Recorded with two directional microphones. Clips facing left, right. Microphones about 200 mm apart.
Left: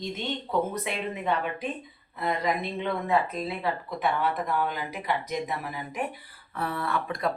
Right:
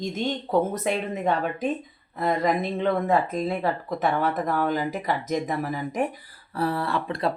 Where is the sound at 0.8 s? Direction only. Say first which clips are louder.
Right 5 dB; 45° right (ahead or behind).